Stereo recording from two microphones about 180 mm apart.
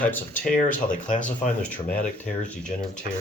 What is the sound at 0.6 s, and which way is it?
Speech, 45° left (ahead or behind).